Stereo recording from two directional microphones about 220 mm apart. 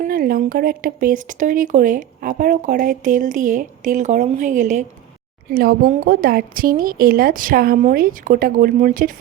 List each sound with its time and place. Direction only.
0.0 s speech: 40° right (ahead or behind)